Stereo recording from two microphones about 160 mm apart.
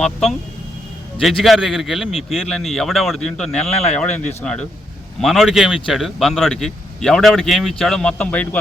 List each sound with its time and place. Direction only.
0.0 s a man's voice: centre (ahead or behind)
4.2 s speech: 45° left (ahead or behind)
5.2 s a man's voice: centre (ahead or behind)